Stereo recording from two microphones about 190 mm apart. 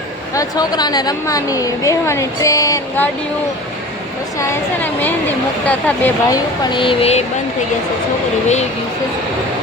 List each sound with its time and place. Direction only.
0.3 s a woman's voice: 20° left (ahead or behind)
4.4 s a woman's voice: 10° left (ahead or behind); by 7.3 s 35° left (ahead or behind)